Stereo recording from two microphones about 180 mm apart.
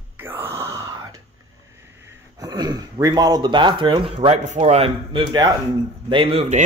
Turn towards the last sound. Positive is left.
turn(degrees=-35)  # may be behind; listen again after turning